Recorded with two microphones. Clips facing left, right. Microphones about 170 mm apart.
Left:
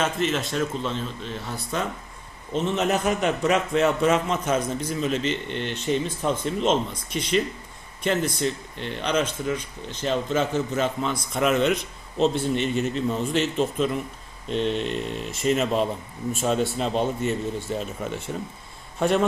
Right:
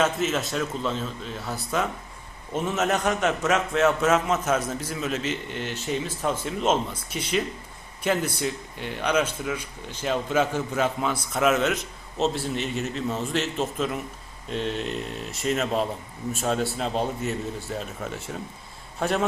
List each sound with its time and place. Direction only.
0.0 s a man's voice: 5° right (ahead or behind)